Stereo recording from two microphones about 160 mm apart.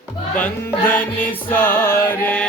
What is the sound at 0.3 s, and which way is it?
Music, 10° left (ahead or behind).